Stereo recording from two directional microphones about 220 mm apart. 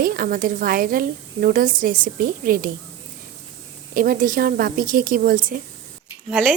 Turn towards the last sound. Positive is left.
turn(degrees=0)  # may be behind; listen again after turning